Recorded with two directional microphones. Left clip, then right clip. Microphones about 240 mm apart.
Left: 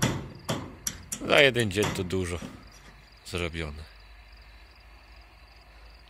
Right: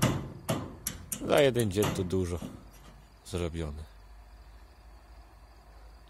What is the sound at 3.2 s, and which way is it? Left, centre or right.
Cricket, centre.